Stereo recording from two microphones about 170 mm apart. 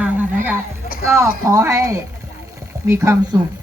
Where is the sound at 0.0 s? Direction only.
10° right (ahead or behind).